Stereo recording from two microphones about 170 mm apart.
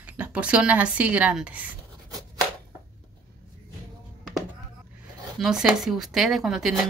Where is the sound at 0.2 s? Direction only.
5° right (ahead or behind).